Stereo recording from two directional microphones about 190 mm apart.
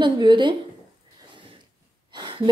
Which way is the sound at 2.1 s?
25° right (ahead or behind).